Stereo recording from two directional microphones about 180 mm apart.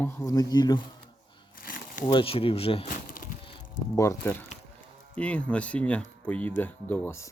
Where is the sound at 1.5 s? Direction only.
50° left (ahead or behind).